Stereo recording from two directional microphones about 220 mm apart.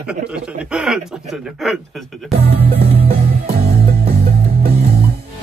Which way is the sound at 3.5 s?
30° right (ahead or behind).